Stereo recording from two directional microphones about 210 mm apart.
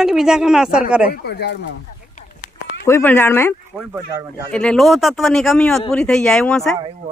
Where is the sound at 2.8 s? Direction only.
10° left (ahead or behind).